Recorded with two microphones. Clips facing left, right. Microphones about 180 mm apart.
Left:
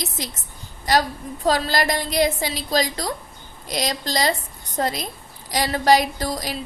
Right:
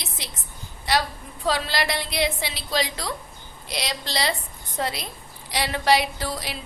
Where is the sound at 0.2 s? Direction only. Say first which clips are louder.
Left 6 dB; 40° left (ahead or behind).